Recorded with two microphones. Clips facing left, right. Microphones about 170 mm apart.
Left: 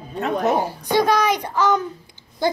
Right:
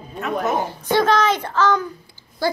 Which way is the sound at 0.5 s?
10° left (ahead or behind).